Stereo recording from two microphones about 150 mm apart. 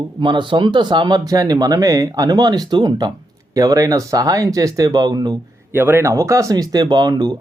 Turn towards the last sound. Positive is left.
turn(degrees=-25)  # may be behind; listen again after turning